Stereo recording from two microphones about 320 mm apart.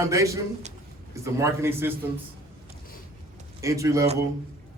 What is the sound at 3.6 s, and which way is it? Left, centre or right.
Speech, centre.